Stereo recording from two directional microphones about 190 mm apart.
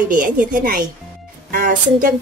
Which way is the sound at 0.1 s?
45° right (ahead or behind).